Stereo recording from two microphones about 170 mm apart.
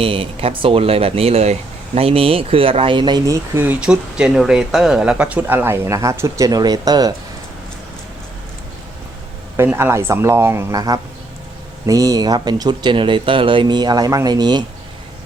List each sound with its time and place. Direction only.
0.0 s speech: 30° right (ahead or behind)
9.6 s speech: 15° right (ahead or behind)